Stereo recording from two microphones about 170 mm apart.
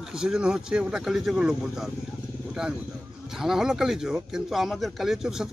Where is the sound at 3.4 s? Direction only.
5° right (ahead or behind).